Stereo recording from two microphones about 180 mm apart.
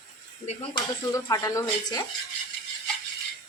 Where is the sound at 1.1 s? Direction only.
20° left (ahead or behind).